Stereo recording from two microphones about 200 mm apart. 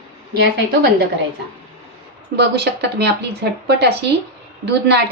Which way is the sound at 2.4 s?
55° right (ahead or behind).